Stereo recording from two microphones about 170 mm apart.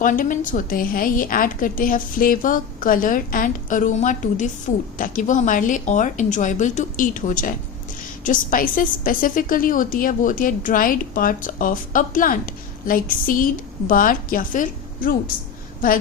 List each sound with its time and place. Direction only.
0.0 s a woman's voice: 50° left (ahead or behind)